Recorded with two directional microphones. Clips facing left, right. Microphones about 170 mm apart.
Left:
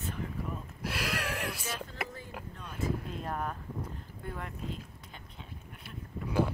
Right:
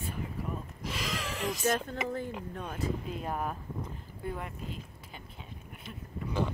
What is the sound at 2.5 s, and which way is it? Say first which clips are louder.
Speech: right 6 dB; 55° right (ahead or behind).